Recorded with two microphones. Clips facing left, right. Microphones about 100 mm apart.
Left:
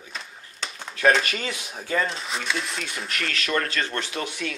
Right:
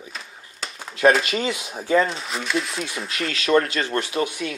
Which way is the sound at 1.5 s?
5° right (ahead or behind).